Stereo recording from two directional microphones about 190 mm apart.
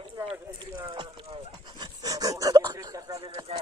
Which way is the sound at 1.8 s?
20° right (ahead or behind).